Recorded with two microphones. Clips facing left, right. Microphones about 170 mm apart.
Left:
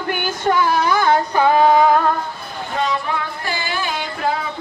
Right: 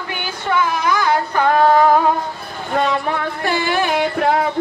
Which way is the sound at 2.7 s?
55° right (ahead or behind).